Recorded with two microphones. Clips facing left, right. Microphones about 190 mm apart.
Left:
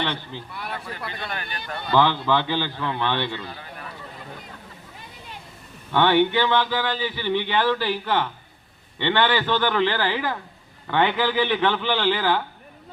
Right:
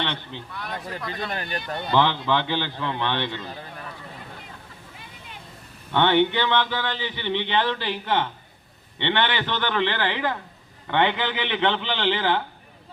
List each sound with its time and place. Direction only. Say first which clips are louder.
0.5 s speech: even; 10° left (ahead or behind)
1.0 s speech: right 2 dB; 35° right (ahead or behind)
1.9 s a man's voice: left 2 dB; 20° right (ahead or behind)
5.9 s a man's voice: left 1 dB; 20° right (ahead or behind)